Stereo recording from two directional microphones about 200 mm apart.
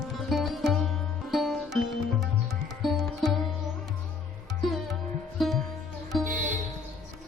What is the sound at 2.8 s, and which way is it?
Music, centre (ahead or behind).